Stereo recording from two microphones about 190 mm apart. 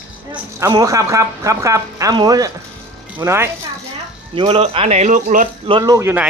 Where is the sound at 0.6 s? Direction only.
20° right (ahead or behind).